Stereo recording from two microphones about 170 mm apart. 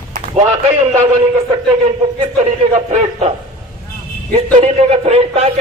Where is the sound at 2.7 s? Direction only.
40° right (ahead or behind).